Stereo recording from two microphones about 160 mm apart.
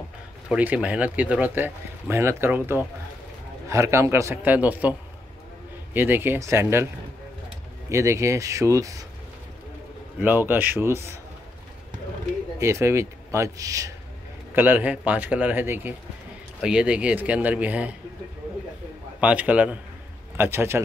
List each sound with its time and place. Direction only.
0.5 s speech: 5° right (ahead or behind)
5.9 s speech: 15° right (ahead or behind)
7.9 s a man's voice: 20° right (ahead or behind)
10.2 s speech: 10° right (ahead or behind)
12.5 s a man's voice: 20° right (ahead or behind)
19.1 s speech: 10° right (ahead or behind)